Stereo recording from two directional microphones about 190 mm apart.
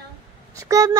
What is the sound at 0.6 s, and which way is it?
Speech, 15° right (ahead or behind).